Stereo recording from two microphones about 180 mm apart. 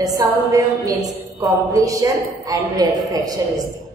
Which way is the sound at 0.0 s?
20° right (ahead or behind).